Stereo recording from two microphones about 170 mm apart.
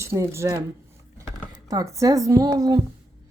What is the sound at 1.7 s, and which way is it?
A woman's voice, 20° right (ahead or behind).